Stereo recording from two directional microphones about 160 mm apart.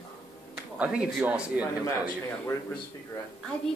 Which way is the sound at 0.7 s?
5° right (ahead or behind).